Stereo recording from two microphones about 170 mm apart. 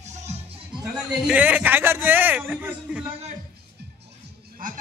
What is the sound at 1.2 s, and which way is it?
A man's voice, 10° right (ahead or behind).